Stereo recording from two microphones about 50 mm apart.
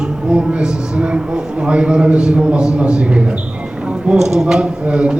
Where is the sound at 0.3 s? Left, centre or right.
Centre.